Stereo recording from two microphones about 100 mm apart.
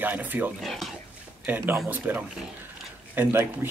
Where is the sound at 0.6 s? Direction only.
Centre (ahead or behind).